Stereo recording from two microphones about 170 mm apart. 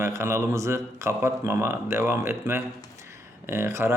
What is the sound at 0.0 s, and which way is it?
A man's voice, 15° right (ahead or behind).